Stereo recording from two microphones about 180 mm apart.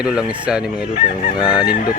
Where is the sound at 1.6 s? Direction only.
55° left (ahead or behind).